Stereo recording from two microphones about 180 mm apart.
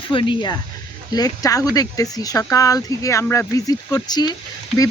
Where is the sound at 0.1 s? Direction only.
30° left (ahead or behind).